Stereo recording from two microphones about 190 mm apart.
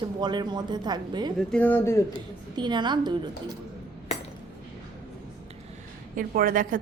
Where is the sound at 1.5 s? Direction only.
10° left (ahead or behind).